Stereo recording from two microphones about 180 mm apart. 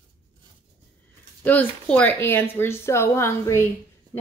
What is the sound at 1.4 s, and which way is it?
A woman's voice, 10° left (ahead or behind).